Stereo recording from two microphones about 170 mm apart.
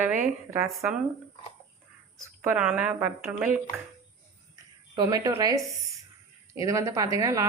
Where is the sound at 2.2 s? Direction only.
10° right (ahead or behind).